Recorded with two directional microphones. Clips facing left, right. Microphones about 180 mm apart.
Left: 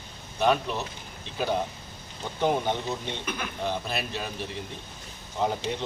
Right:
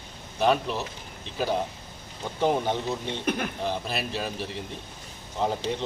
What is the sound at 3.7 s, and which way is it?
Speech, 5° right (ahead or behind).